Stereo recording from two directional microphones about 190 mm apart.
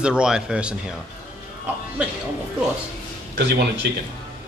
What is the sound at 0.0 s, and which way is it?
Speech, 5° right (ahead or behind).